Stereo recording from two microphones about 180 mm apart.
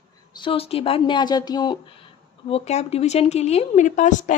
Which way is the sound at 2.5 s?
35° left (ahead or behind).